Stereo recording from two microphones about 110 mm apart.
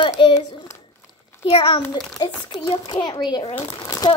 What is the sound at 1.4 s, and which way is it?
Speech, 50° left (ahead or behind).